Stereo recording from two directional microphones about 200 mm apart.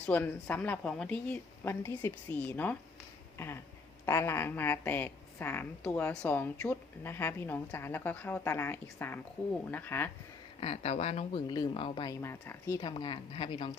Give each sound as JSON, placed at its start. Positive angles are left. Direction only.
{"t": 0.0, "sound": "a woman's voice", "side_deg": 10}
{"t": 3.3, "sound": "a sound", "side_deg": 10}
{"t": 4.0, "sound": "a woman's voice", "side_deg": 15}
{"t": 10.6, "sound": "speech", "side_deg": 30}
{"t": 12.2, "sound": "speech", "side_deg": 15}